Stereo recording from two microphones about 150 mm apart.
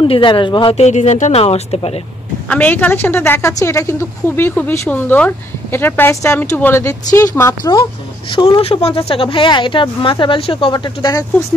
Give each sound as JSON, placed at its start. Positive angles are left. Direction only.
{"t": 0.0, "sound": "speech", "side_deg": 35}
{"t": 2.5, "sound": "a woman's voice", "side_deg": 10}
{"t": 8.3, "sound": "speech", "side_deg": 35}